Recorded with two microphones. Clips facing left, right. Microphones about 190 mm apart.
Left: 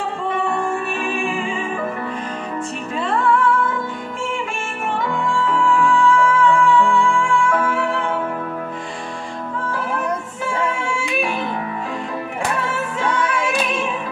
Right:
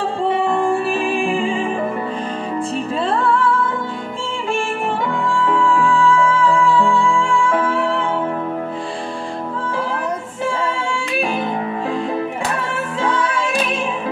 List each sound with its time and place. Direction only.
0.3 s music: 30° right (ahead or behind)
3.0 s music: 30° right (ahead or behind)
5.7 s music: 30° right (ahead or behind)
13.2 s music: 30° right (ahead or behind)